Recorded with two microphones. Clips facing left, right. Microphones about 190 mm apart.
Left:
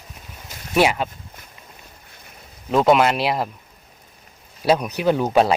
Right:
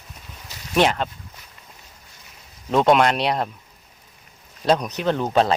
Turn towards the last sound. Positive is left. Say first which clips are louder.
# left 2 dB
turn(degrees=10)  # may be behind; listen again after turning